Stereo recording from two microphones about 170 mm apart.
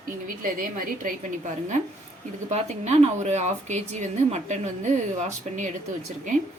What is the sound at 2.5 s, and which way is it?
Speech, 40° right (ahead or behind).